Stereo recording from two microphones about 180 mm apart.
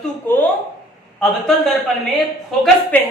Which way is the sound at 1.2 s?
Centre (ahead or behind).